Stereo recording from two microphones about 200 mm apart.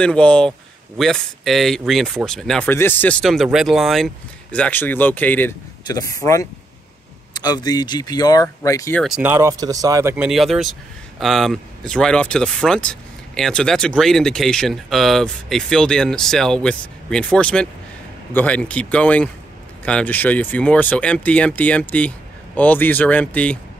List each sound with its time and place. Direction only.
0.0 s speech: 5° left (ahead or behind)
9.0 s speech: 5° right (ahead or behind)
10.1 s speech: 5° right (ahead or behind)